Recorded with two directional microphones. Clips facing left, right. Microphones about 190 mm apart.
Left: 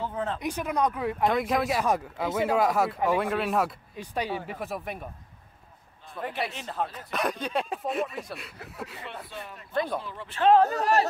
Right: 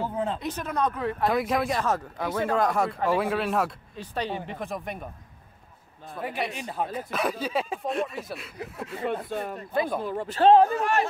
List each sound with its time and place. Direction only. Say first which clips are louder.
0.4 s speech: left 1 dB; 10° left (ahead or behind)
1.2 s speech: even; centre (ahead or behind)
3.9 s speech: even; 10° left (ahead or behind)
6.1 s a man's voice: right 1 dB; 10° right (ahead or behind)
9.3 s speech: right 9 dB; 50° right (ahead or behind)
9.8 s speech: right 2 dB; 5° right (ahead or behind)
10.0 s speech: right 7 dB; 45° right (ahead or behind)
10.7 s speech: left 1 dB; 35° left (ahead or behind)